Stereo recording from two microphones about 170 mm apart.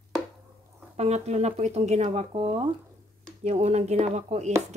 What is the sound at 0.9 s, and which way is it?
Speech, 40° right (ahead or behind).